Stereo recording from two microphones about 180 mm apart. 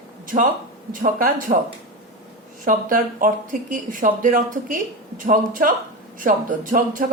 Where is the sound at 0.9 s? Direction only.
50° right (ahead or behind).